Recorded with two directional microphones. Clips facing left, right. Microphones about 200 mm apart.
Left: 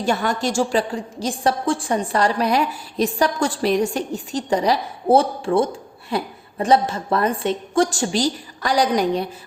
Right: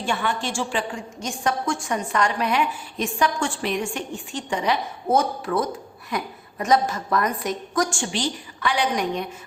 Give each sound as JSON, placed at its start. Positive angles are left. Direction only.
{"t": 0.0, "sound": "a woman's voice", "side_deg": 40}